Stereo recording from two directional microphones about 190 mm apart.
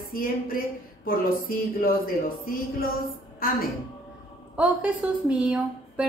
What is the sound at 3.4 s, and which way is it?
Speech, 50° left (ahead or behind).